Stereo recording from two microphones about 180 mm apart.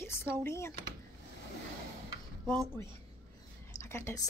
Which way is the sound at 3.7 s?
15° left (ahead or behind).